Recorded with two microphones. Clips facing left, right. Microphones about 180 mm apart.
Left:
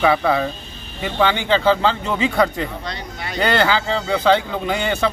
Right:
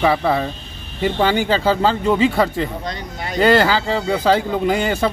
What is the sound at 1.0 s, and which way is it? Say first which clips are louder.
Speech: right 2 dB; 40° right (ahead or behind).